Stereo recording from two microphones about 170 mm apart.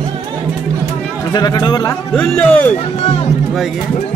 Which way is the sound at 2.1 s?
10° left (ahead or behind).